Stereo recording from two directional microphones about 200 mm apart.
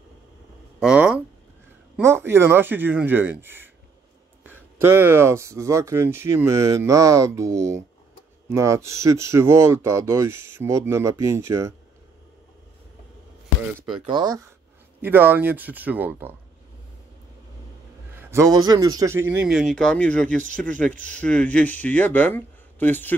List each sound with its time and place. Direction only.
0.7 s a sound: 5° right (ahead or behind)
2.0 s speech: 10° right (ahead or behind)
14.0 s speech: 20° right (ahead or behind)
18.1 s a man's voice: 10° right (ahead or behind); by 23.1 s 10° left (ahead or behind)